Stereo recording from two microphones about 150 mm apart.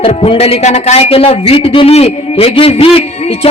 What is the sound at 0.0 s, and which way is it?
A man's voice, 40° left (ahead or behind).